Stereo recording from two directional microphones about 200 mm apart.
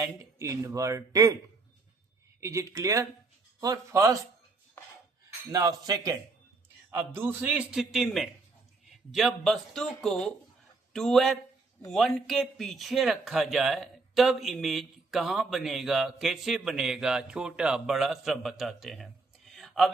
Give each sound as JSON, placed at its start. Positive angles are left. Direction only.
{"t": 0.0, "sound": "speech", "side_deg": -15}
{"t": 2.4, "sound": "speech", "side_deg": -15}
{"t": 5.5, "sound": "speech", "side_deg": -15}